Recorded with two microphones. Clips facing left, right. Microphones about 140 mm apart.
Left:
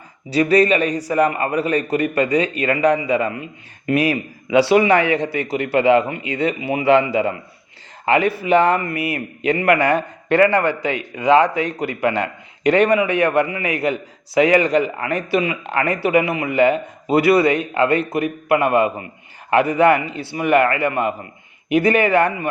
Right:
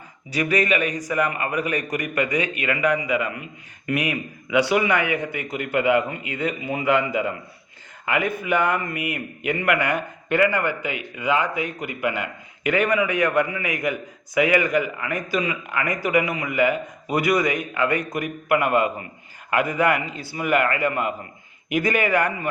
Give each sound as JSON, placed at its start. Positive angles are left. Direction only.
{"t": 0.3, "sound": "a man's voice", "side_deg": 30}
{"t": 6.2, "sound": "speech", "side_deg": 90}
{"t": 6.8, "sound": "a man's voice", "side_deg": 30}
{"t": 8.4, "sound": "a man's voice", "side_deg": 30}